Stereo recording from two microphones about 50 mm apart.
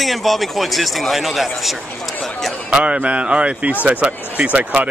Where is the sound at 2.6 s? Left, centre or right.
Right.